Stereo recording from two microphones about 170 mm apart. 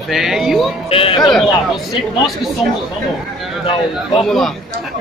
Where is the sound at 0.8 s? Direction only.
30° left (ahead or behind).